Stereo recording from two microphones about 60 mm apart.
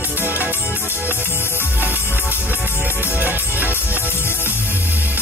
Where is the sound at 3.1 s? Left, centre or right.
Right.